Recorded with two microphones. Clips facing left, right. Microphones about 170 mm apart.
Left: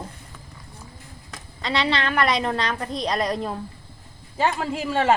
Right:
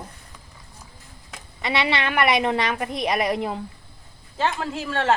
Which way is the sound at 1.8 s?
15° right (ahead or behind).